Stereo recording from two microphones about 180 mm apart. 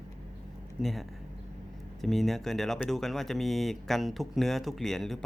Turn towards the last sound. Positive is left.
turn(degrees=0)  # may be behind; listen again after turning